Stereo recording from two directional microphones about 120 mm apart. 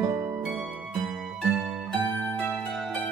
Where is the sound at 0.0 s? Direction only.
25° right (ahead or behind).